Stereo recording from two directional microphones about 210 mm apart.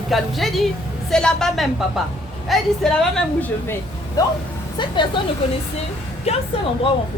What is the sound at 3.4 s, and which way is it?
Speech, 10° left (ahead or behind).